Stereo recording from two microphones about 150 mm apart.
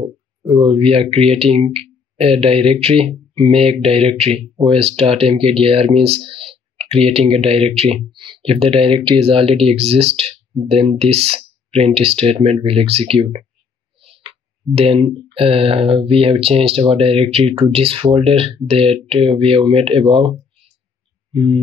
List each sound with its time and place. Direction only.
0.4 s speech: 35° right (ahead or behind)
14.8 s speech: 40° right (ahead or behind)